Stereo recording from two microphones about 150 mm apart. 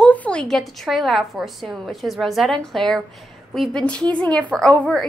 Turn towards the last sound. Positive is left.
turn(degrees=5)  # may be behind; listen again after turning